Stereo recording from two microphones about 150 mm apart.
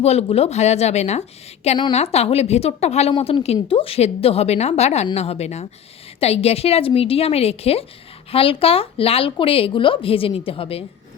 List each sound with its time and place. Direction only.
0.0 s a woman's voice: 45° left (ahead or behind)
3.1 s a woman's voice: 35° left (ahead or behind)